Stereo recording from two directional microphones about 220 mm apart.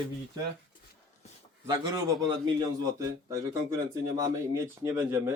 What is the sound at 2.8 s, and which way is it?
Speech, 15° right (ahead or behind).